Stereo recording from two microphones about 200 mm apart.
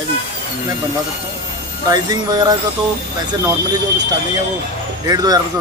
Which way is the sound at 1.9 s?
20° right (ahead or behind).